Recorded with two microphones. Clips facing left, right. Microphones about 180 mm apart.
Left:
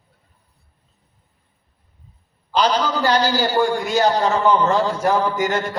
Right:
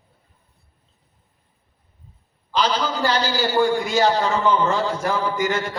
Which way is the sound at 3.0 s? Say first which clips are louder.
Left 3 dB; 45° left (ahead or behind).